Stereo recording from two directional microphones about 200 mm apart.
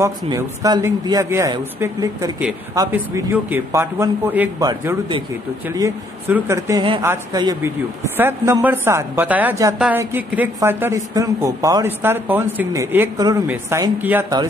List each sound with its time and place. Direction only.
0.0 s a woman's voice: 15° right (ahead or behind)